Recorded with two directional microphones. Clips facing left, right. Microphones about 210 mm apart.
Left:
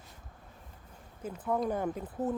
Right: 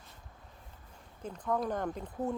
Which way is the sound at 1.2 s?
10° left (ahead or behind).